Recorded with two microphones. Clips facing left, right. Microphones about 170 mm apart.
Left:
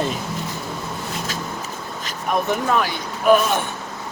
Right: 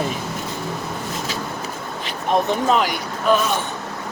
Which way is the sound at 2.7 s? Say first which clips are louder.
Right 3 dB; 20° right (ahead or behind).